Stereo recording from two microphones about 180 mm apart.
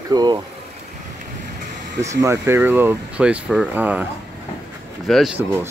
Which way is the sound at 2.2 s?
15° right (ahead or behind).